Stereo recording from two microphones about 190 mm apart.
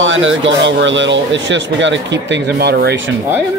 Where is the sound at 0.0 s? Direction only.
90° right.